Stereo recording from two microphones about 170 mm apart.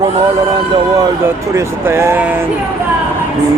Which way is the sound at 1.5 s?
15° right (ahead or behind).